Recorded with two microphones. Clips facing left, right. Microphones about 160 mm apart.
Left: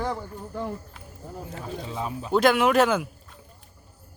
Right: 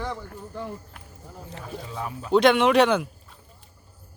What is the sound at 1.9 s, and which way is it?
Speech, 20° left (ahead or behind).